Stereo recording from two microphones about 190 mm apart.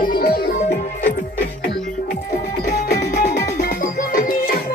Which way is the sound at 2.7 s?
55° left (ahead or behind).